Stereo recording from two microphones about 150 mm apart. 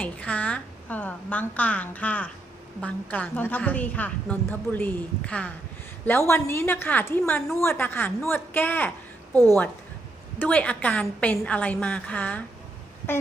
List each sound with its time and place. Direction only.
0.0 s a woman's voice: 10° left (ahead or behind)
9.3 s a woman's voice: 25° right (ahead or behind)
10.3 s a woman's voice: 10° left (ahead or behind)